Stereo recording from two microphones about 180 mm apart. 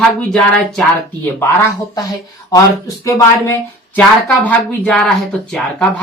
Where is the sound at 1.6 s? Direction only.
20° left (ahead or behind).